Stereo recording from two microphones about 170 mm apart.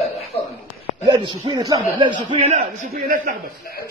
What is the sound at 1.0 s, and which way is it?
Speech, 25° right (ahead or behind).